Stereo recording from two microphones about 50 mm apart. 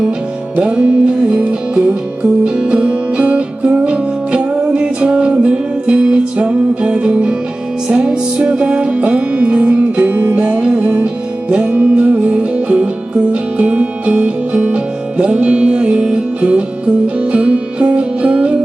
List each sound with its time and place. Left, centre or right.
0.6 s music: right